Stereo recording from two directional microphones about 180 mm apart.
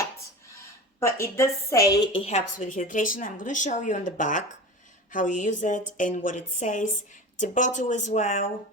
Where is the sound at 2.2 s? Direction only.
40° left (ahead or behind).